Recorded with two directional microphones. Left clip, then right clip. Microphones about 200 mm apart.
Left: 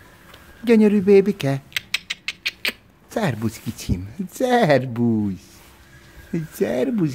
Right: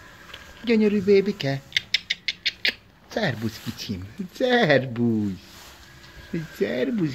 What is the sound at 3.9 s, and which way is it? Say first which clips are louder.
Speech: left 5 dB; 25° left (ahead or behind).